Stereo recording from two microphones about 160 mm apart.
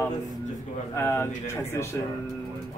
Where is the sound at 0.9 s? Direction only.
15° left (ahead or behind).